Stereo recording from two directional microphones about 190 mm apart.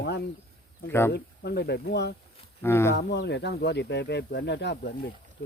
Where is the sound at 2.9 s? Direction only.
60° left (ahead or behind).